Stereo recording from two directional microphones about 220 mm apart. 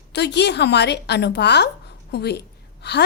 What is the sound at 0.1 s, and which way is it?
A woman's voice, 50° left (ahead or behind).